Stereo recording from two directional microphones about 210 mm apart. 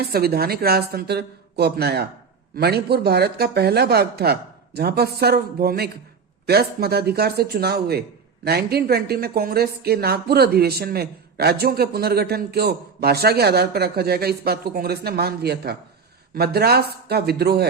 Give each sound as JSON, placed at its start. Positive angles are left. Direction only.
{"t": 0.1, "sound": "speech", "side_deg": -45}